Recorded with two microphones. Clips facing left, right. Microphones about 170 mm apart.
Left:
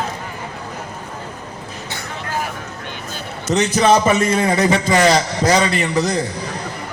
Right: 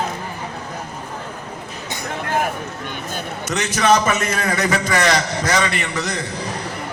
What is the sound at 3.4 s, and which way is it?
A man's voice, 30° left (ahead or behind).